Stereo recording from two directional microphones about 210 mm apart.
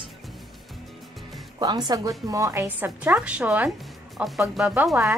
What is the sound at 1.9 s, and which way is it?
A woman's voice, 15° right (ahead or behind).